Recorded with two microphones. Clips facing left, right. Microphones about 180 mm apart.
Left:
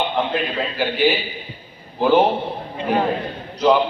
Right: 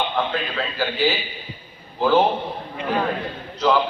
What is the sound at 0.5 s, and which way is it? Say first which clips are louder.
A man's voice: left 3 dB; 20° left (ahead or behind).